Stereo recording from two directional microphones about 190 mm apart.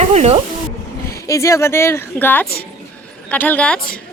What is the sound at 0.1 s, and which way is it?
Speech, 35° right (ahead or behind).